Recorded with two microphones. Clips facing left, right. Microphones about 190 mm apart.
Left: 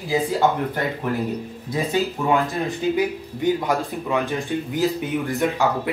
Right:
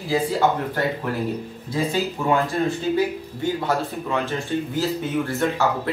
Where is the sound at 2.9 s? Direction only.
15° left (ahead or behind).